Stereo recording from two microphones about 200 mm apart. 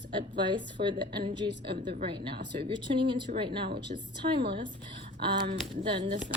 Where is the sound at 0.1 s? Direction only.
25° right (ahead or behind).